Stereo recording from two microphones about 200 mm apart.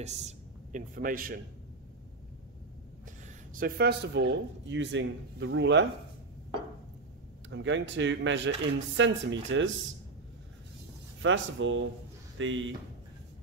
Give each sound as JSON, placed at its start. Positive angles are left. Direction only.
{"t": 0.0, "sound": "speech", "side_deg": -35}
{"t": 3.5, "sound": "speech", "side_deg": -50}
{"t": 7.4, "sound": "speech", "side_deg": -70}
{"t": 11.2, "sound": "speech", "side_deg": -70}